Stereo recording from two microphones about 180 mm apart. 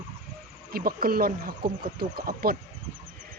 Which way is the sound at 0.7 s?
55° right (ahead or behind).